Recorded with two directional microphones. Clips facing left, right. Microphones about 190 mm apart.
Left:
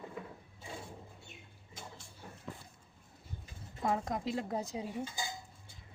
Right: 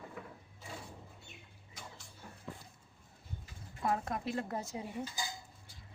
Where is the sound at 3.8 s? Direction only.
20° left (ahead or behind).